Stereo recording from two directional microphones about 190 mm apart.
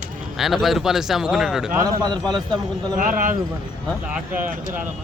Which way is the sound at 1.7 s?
15° right (ahead or behind).